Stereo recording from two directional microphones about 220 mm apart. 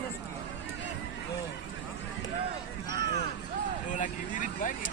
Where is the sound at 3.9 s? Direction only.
35° left (ahead or behind).